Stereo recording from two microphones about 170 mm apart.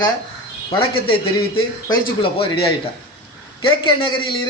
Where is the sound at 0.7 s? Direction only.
30° left (ahead or behind).